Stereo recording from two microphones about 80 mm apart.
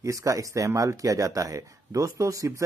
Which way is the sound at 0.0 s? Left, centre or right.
Right.